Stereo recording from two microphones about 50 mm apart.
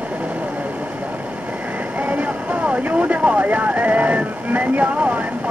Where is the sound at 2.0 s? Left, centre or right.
Right.